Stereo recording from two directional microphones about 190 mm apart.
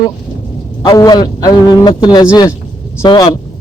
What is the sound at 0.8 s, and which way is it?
A man's voice, 20° left (ahead or behind).